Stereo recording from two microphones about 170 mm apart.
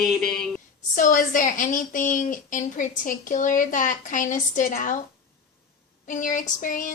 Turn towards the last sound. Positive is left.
turn(degrees=50)  # may be behind; listen again after turning